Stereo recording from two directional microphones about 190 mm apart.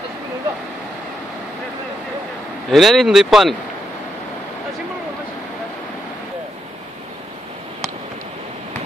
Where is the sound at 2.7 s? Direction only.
Centre (ahead or behind).